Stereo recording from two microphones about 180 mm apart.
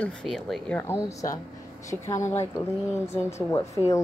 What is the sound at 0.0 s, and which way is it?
Speech, 5° left (ahead or behind).